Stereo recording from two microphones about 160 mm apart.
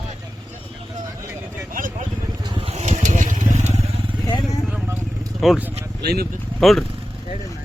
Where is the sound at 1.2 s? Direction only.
15° right (ahead or behind).